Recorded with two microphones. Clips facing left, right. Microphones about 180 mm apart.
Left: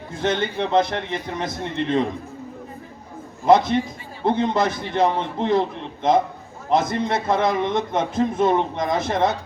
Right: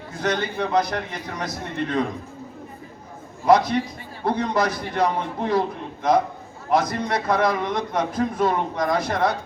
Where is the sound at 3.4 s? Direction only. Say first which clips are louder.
Left 1 dB; 25° left (ahead or behind).